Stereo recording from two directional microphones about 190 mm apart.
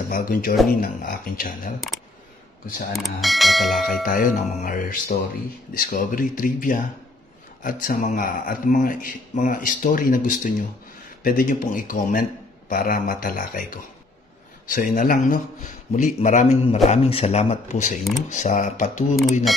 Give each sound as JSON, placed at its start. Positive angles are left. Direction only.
{"t": 0.1, "sound": "speech", "side_deg": 45}
{"t": 2.9, "sound": "speech", "side_deg": 0}
{"t": 4.0, "sound": "speech", "side_deg": 45}